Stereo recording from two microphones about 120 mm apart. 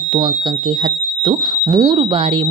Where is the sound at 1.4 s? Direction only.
35° right (ahead or behind).